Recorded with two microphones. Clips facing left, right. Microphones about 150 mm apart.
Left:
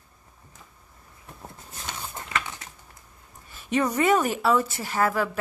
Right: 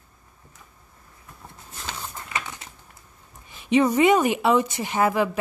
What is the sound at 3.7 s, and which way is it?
Speech, 10° right (ahead or behind).